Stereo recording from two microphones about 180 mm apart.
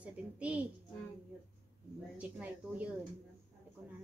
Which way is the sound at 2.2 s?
10° right (ahead or behind).